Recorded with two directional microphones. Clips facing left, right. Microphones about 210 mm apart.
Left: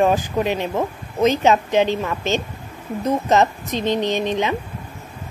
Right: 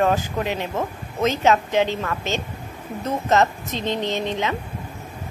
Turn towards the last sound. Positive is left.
turn(degrees=15)  # may be behind; listen again after turning